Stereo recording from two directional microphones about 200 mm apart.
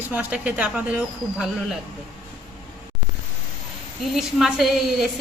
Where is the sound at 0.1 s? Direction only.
10° right (ahead or behind).